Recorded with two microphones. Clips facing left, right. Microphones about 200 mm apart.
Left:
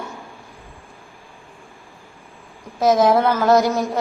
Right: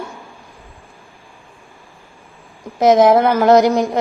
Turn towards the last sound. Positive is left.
turn(degrees=-20)  # may be behind; listen again after turning